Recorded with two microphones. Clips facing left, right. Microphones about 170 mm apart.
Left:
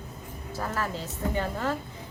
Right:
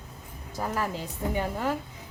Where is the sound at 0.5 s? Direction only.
15° right (ahead or behind).